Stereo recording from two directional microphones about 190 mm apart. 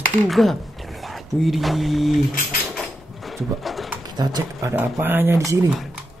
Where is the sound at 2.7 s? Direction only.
Centre (ahead or behind).